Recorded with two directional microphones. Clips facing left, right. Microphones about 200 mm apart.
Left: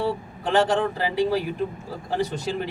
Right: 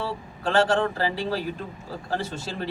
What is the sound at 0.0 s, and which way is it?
Speech, 15° left (ahead or behind).